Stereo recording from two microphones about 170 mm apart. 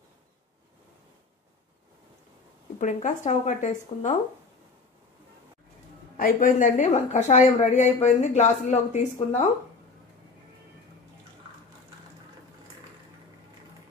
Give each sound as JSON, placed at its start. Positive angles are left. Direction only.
{"t": 2.8, "sound": "a woman's voice", "side_deg": 45}
{"t": 6.1, "sound": "a woman's voice", "side_deg": 55}